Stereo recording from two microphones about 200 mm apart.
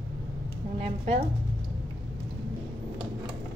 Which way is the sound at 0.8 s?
30° right (ahead or behind).